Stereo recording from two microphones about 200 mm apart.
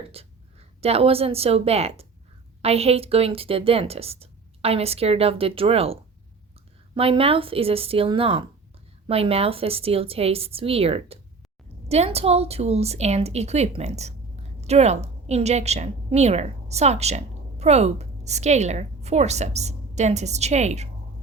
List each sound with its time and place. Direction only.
0.1 s a woman's voice: 30° right (ahead or behind)